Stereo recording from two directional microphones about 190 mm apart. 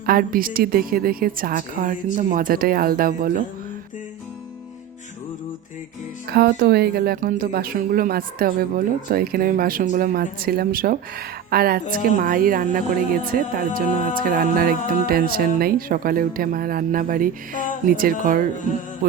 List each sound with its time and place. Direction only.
0.0 s a woman's voice: 50° right (ahead or behind)
6.3 s a woman's voice: 55° right (ahead or behind)